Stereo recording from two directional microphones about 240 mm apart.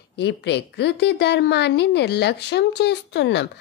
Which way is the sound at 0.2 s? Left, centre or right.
Left.